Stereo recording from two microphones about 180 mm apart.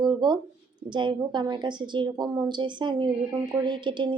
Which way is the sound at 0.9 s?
25° right (ahead or behind).